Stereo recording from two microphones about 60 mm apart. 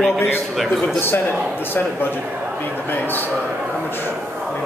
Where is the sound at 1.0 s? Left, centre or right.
Left.